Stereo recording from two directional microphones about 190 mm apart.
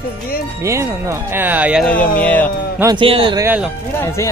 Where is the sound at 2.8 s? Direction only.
25° right (ahead or behind).